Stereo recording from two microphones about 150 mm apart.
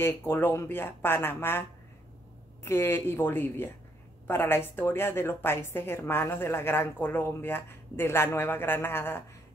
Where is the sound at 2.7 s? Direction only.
15° left (ahead or behind).